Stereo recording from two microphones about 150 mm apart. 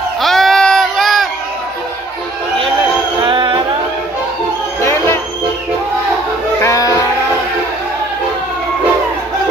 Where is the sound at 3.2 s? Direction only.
35° right (ahead or behind).